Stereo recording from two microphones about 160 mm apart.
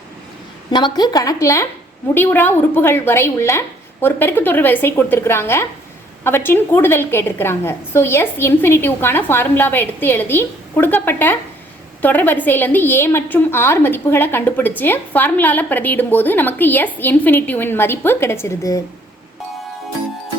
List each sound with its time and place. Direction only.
0.7 s a woman's voice: 30° left (ahead or behind)